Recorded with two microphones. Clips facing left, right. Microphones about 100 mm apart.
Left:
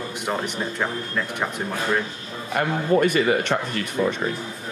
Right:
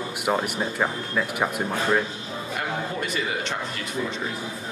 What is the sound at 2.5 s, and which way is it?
A man's voice, 55° left (ahead or behind).